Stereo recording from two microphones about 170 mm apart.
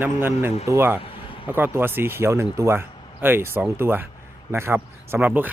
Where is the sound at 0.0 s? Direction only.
15° right (ahead or behind).